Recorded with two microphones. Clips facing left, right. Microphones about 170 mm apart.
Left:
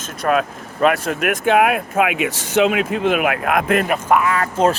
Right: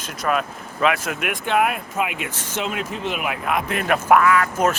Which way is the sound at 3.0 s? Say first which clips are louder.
Left 7 dB; 60° left (ahead or behind).